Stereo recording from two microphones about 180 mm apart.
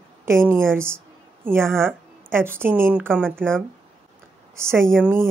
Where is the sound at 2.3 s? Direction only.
10° right (ahead or behind).